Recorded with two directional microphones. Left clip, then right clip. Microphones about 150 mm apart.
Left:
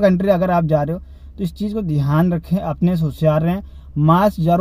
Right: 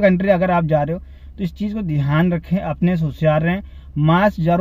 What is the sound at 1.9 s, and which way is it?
Speech, 20° left (ahead or behind).